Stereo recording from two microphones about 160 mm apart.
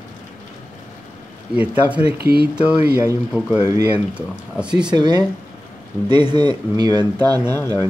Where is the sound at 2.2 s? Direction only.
80° right.